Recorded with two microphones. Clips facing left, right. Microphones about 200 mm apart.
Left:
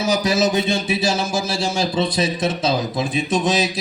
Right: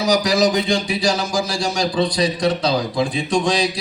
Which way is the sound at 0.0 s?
25° left (ahead or behind).